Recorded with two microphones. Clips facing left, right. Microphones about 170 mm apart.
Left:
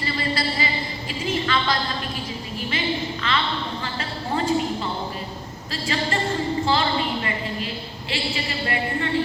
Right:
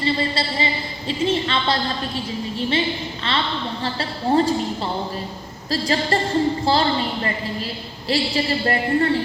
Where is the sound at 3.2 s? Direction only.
30° right (ahead or behind).